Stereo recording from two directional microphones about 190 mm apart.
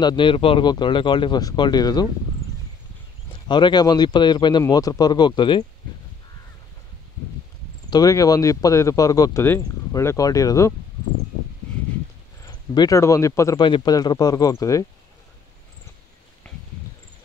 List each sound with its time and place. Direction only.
0.0 s speech: 25° left (ahead or behind)
3.4 s speech: 25° left (ahead or behind)
7.9 s speech: 20° left (ahead or behind)
12.7 s speech: 15° left (ahead or behind)
16.5 s a sound: 5° left (ahead or behind)